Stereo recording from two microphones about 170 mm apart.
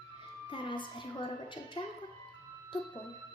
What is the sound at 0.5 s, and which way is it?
A woman's voice, 30° left (ahead or behind).